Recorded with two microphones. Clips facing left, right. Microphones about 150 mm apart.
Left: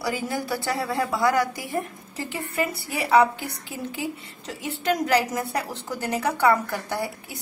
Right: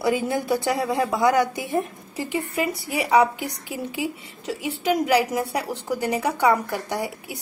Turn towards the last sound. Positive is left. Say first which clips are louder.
# right 1 dB
turn(degrees=-15)  # may be behind; listen again after turning